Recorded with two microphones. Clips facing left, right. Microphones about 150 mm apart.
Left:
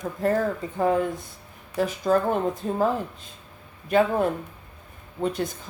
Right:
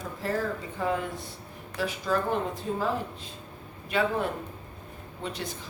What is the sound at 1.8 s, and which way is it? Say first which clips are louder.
Speech: left 6 dB; 45° left (ahead or behind).